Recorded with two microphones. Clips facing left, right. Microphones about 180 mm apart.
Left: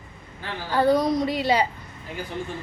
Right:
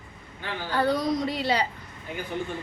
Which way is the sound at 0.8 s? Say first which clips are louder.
Left 5 dB; 15° left (ahead or behind).